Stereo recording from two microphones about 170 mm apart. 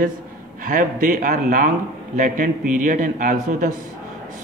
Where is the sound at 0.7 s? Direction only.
50° right (ahead or behind).